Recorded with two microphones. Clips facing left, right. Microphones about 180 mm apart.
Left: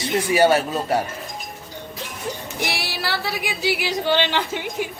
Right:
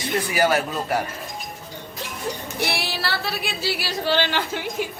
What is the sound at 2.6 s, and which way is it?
Speech, 15° left (ahead or behind).